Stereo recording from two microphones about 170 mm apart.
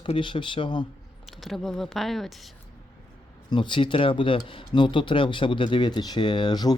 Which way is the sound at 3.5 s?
30° left (ahead or behind).